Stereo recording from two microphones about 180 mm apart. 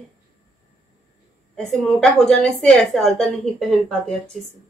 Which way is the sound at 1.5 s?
Centre (ahead or behind).